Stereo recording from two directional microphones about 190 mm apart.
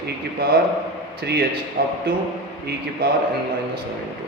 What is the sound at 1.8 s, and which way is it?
Speech, 50° right (ahead or behind).